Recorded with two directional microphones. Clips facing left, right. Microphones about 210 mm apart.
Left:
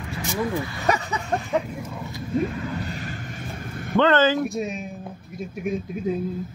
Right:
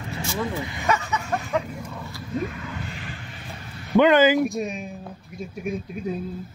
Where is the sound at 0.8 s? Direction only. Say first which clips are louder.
Even; 35° left (ahead or behind).